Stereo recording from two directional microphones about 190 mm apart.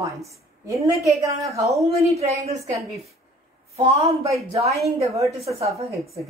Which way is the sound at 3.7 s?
30° right (ahead or behind).